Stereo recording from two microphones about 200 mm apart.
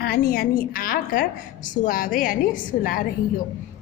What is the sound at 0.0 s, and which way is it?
A woman's voice, 50° left (ahead or behind).